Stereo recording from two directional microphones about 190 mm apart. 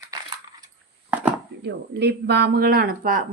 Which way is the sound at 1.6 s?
60° right (ahead or behind).